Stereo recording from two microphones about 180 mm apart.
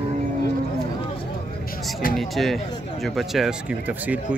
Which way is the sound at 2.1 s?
Centre (ahead or behind).